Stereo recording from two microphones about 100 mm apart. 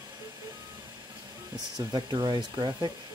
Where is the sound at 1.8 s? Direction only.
50° right (ahead or behind).